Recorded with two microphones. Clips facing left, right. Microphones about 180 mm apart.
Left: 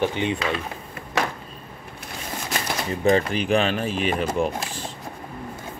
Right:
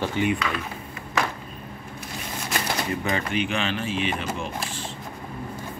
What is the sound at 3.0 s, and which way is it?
Speech, 35° left (ahead or behind).